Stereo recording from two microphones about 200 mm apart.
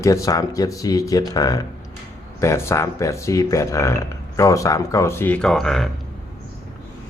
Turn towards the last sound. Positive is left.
turn(degrees=0)  # may be behind; listen again after turning